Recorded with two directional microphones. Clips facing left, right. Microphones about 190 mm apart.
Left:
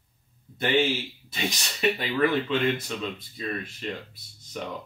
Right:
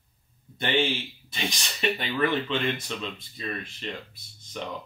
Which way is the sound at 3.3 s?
5° left (ahead or behind).